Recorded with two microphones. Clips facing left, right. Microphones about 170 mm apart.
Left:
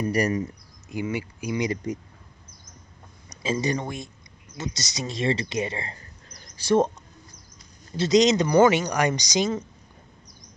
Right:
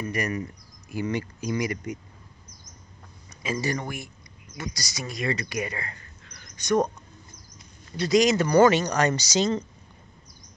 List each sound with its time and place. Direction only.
0.0 s speech: 35° left (ahead or behind)
1.0 s speech: 10° left (ahead or behind)
3.4 s speech: 25° left (ahead or behind)
7.9 s speech: 25° left (ahead or behind)